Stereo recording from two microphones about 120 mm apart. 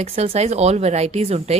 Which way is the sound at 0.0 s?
60° right (ahead or behind).